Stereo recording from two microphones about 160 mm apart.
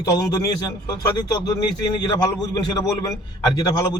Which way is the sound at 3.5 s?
25° left (ahead or behind).